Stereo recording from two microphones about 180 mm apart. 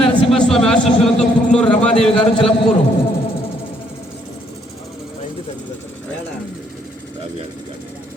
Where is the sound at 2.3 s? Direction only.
30° left (ahead or behind).